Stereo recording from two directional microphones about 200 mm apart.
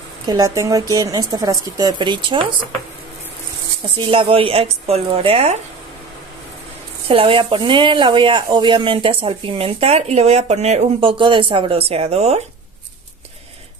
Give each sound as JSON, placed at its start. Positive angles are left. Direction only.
{"t": 0.3, "sound": "speech", "side_deg": -20}
{"t": 4.1, "sound": "speech", "side_deg": -25}
{"t": 7.1, "sound": "speech", "side_deg": -25}